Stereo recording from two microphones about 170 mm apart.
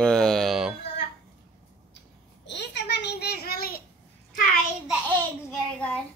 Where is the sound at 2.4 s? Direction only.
90° left; by 3.8 s 60° left (ahead or behind).